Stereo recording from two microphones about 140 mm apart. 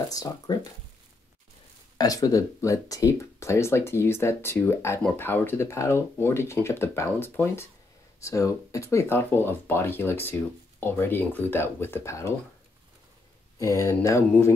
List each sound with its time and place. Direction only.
0.1 s speech: 25° left (ahead or behind)
2.0 s speech: 25° left (ahead or behind)
13.6 s speech: 20° left (ahead or behind)